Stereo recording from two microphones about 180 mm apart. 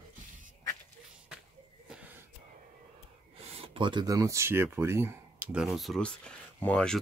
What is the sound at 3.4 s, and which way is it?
Speech, 30° right (ahead or behind).